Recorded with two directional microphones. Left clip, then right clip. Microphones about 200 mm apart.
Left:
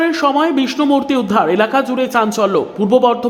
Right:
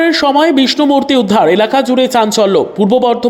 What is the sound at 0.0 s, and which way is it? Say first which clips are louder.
Speech: right 4 dB; 15° right (ahead or behind).